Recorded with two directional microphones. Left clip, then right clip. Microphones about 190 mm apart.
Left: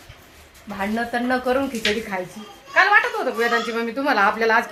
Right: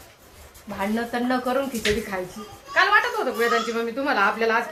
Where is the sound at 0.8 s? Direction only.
20° left (ahead or behind).